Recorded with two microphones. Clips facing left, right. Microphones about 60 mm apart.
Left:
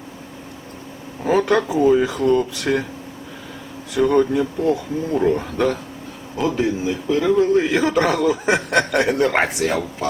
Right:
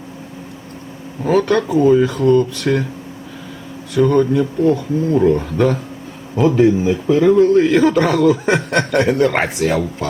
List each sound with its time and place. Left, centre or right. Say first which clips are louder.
1.2 s a man's voice: right 2 dB; centre
3.9 s a man's voice: right 3 dB; centre
6.8 s speech: right 6 dB; right
7.3 s a man's voice: right 5 dB; centre